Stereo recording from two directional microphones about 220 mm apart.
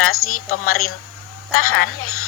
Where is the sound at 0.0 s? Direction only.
70° left (ahead or behind).